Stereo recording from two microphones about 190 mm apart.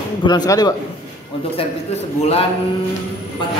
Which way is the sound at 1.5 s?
30° left (ahead or behind).